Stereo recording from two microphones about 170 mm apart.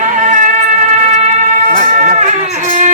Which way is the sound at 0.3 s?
50° right (ahead or behind).